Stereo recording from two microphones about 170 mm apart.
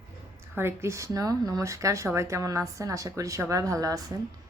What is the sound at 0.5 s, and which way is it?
A woman's voice, 15° right (ahead or behind).